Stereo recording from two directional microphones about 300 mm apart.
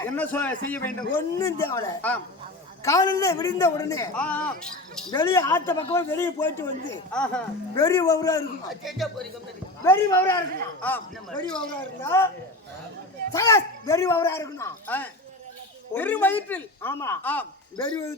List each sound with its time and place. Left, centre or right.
0.0 s a man's voice: centre
8.7 s a man's voice: centre
13.3 s a man's voice: centre